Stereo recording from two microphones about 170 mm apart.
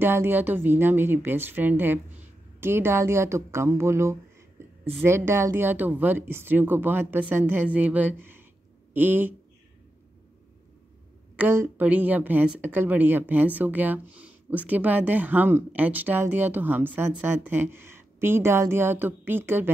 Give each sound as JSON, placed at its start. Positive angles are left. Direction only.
{"t": 0.0, "sound": "speech", "side_deg": -15}
{"t": 11.3, "sound": "speech", "side_deg": -15}